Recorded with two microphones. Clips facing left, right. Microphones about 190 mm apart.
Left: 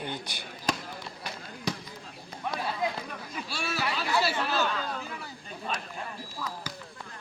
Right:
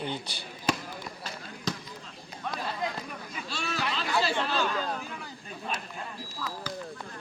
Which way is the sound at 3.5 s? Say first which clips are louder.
Even; 10° left (ahead or behind).